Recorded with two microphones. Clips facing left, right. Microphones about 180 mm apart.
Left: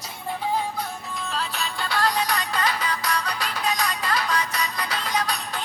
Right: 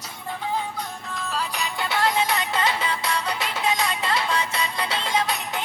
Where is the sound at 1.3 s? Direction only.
10° right (ahead or behind).